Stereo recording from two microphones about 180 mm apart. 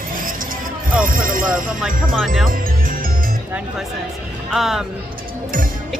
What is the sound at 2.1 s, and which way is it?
Speech, centre (ahead or behind).